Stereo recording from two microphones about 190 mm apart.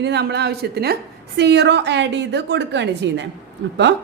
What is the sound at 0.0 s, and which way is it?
Speech, 60° right (ahead or behind).